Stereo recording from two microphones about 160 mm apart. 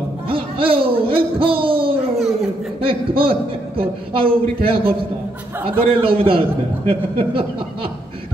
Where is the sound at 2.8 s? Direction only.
35° right (ahead or behind).